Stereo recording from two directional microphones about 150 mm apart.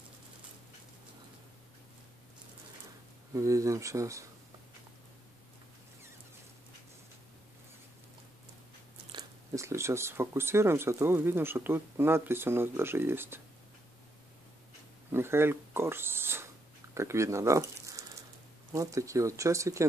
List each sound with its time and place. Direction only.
3.3 s speech: 20° right (ahead or behind)
9.6 s speech: 20° right (ahead or behind)
15.0 s speech: 15° right (ahead or behind)